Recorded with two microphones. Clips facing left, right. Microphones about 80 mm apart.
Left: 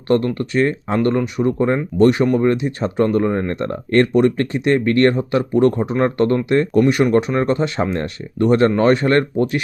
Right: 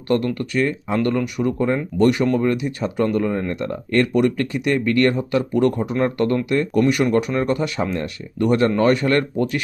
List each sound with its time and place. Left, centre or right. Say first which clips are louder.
0.1 s speech: left 3 dB; left
5.1 s speech: left 3 dB; left